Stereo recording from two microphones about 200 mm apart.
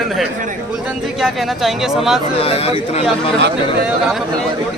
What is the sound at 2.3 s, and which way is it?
Speech, 30° left (ahead or behind).